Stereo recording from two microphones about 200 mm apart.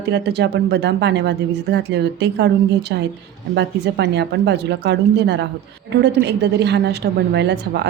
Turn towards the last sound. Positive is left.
turn(degrees=-60)  # may be behind; listen again after turning